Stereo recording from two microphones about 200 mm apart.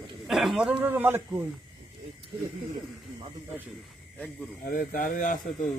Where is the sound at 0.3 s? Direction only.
Centre (ahead or behind).